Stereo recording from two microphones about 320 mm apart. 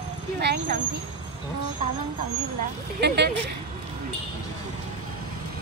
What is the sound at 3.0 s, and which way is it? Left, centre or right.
Speech, right.